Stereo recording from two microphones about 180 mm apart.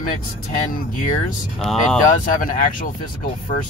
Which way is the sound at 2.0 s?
50° left (ahead or behind).